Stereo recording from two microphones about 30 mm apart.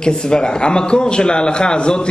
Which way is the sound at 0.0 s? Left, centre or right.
Left.